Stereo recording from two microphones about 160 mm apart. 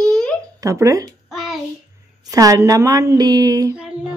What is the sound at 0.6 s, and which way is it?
Speech, 20° right (ahead or behind).